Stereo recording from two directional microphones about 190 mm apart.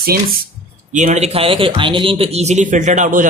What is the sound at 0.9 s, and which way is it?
Speech, 40° right (ahead or behind).